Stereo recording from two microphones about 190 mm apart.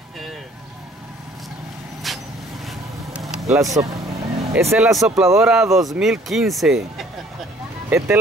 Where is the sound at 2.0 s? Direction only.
Centre (ahead or behind).